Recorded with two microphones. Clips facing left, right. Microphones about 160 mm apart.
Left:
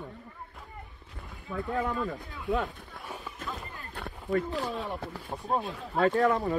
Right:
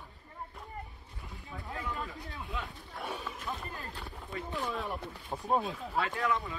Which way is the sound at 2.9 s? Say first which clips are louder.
Right 2 dB; 75° right (ahead or behind).